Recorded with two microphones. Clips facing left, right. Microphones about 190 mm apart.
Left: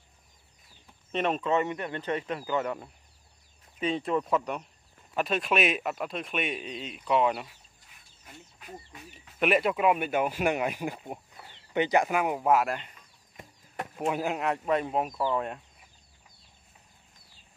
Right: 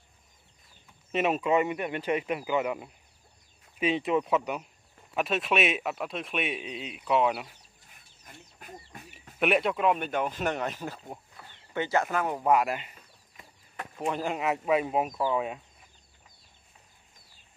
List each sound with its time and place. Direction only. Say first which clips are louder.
1.1 s speech: right 2 dB; 5° right (ahead or behind)
8.5 s duck: left 1 dB; 50° right (ahead or behind)
9.4 s speech: left 1 dB; centre (ahead or behind)
13.9 s speech: left 1 dB; 5° left (ahead or behind)